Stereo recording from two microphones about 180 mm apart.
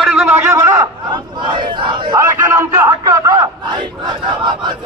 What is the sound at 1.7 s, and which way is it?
Battle cry, 25° right (ahead or behind).